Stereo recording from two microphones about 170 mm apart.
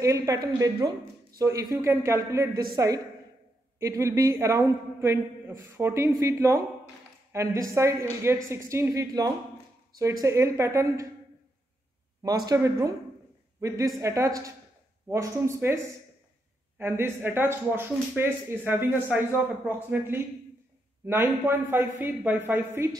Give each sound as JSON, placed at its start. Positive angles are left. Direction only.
{"t": 0.0, "sound": "a woman's voice", "side_deg": -20}
{"t": 12.4, "sound": "a woman's voice", "side_deg": -20}